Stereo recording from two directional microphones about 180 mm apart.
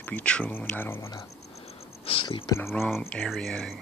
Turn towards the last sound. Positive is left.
turn(degrees=5)  # may be behind; listen again after turning